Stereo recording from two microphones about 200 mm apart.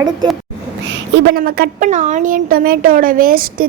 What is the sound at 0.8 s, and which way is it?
A woman's voice, 60° right (ahead or behind).